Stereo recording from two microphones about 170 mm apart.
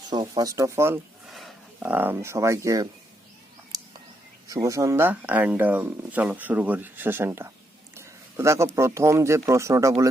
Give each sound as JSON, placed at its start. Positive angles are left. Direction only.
{"t": 0.1, "sound": "speech", "side_deg": -25}
{"t": 1.3, "sound": "speech", "side_deg": 0}
{"t": 4.4, "sound": "speech", "side_deg": -20}